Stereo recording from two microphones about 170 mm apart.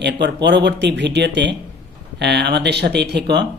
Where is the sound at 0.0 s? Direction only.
90° right.